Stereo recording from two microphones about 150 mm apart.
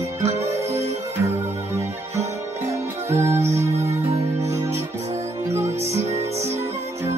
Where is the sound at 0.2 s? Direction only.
45° right (ahead or behind).